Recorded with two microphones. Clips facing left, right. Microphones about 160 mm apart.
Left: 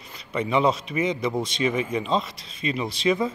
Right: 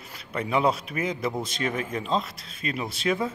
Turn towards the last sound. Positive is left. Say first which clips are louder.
# left 3 dB
turn(degrees=-5)  # may be behind; listen again after turning